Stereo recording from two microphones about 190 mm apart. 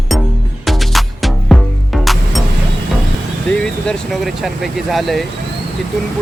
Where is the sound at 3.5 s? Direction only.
5° left (ahead or behind).